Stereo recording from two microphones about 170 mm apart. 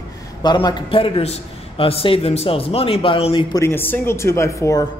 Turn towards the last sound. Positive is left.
turn(degrees=15)  # may be behind; listen again after turning